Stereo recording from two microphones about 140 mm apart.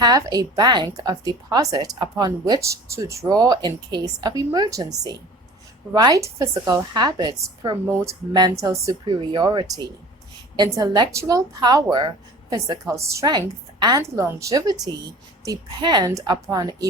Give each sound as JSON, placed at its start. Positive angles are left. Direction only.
{"t": 0.0, "sound": "speech", "side_deg": -30}
{"t": 14.0, "sound": "speech", "side_deg": -20}